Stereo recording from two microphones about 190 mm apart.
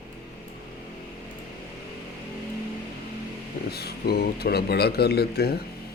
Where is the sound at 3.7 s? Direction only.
55° left (ahead or behind).